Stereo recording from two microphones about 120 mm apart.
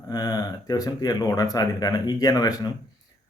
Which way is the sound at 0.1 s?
35° left (ahead or behind).